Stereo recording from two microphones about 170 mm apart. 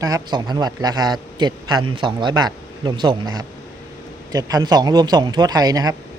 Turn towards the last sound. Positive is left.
turn(degrees=-25)  # may be behind; listen again after turning